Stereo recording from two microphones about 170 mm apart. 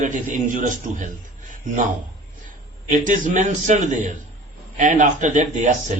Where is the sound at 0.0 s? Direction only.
50° right (ahead or behind).